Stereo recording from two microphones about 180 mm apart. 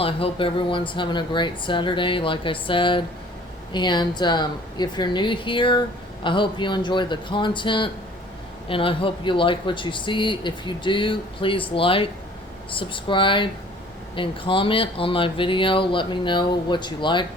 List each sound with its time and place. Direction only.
0.0 s speech: 30° left (ahead or behind)